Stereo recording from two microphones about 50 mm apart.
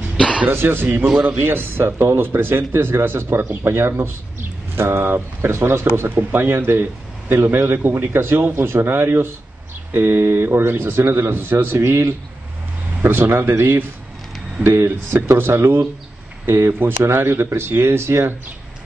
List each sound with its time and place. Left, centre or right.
0.5 s speech: right
13.0 s speech: right
14.6 s speech: right
15.3 s speech: right